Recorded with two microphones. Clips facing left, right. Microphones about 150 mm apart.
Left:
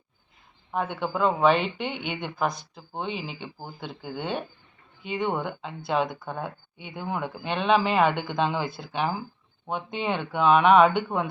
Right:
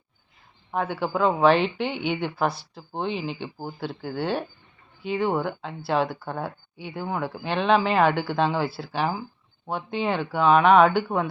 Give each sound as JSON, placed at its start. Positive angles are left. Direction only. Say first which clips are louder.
{"t": 0.7, "sound": "speech", "louder": "right 2 dB", "side_deg": -5}